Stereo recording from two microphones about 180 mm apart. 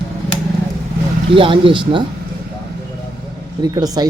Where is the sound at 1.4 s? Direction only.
30° right (ahead or behind).